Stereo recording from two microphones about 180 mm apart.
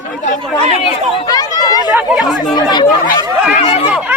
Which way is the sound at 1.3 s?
20° left (ahead or behind).